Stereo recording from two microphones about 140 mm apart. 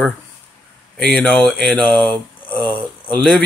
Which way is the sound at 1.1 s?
10° left (ahead or behind).